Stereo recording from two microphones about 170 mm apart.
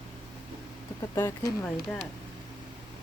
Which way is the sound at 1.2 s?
15° left (ahead or behind).